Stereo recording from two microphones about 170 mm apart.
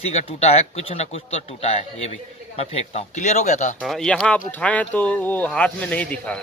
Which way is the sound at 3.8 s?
Centre (ahead or behind).